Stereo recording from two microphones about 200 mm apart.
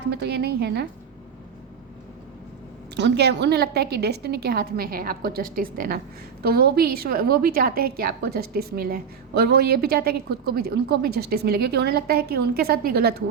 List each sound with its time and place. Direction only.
0.1 s speech: 55° right (ahead or behind)
2.9 s a woman's voice: 55° right (ahead or behind)